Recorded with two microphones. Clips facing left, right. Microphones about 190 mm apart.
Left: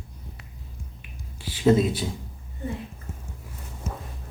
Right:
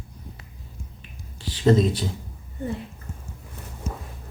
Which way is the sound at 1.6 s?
5° left (ahead or behind).